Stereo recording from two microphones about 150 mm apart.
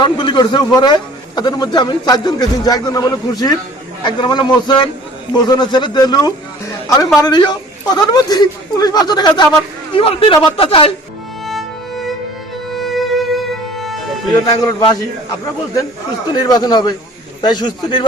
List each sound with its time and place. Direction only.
0.0 s a man's voice: 30° left (ahead or behind)
11.4 s music: centre (ahead or behind)
14.6 s speech: 25° left (ahead or behind)
16.3 s speech: 25° left (ahead or behind)